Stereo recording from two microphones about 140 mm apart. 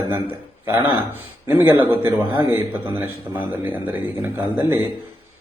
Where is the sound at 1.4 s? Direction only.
15° right (ahead or behind).